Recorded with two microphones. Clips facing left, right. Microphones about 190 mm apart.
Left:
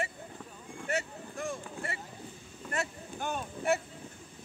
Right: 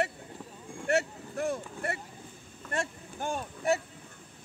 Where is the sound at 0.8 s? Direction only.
65° right (ahead or behind).